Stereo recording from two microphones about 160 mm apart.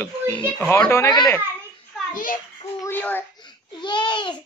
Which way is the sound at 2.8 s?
10° left (ahead or behind).